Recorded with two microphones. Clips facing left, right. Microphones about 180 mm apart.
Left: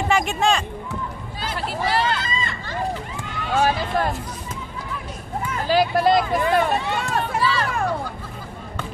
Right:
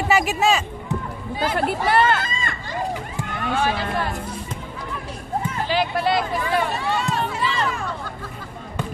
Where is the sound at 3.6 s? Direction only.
45° left (ahead or behind).